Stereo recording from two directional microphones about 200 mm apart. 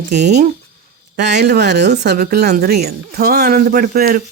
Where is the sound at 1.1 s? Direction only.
55° right (ahead or behind).